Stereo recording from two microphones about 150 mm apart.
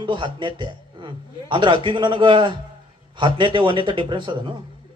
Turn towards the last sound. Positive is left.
turn(degrees=-35)  # may be behind; listen again after turning